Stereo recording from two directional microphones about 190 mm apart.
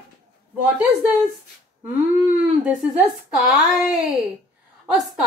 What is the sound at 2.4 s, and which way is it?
Speech, 5° right (ahead or behind).